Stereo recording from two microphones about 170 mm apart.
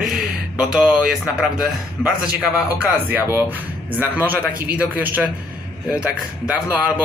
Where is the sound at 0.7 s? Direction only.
5° right (ahead or behind).